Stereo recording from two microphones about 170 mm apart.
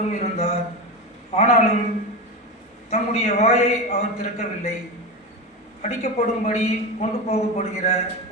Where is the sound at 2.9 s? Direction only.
40° left (ahead or behind).